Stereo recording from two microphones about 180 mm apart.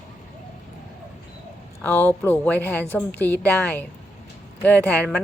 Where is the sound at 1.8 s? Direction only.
10° left (ahead or behind).